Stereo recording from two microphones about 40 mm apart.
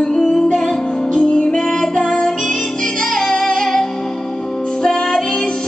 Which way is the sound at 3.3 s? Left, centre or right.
Centre.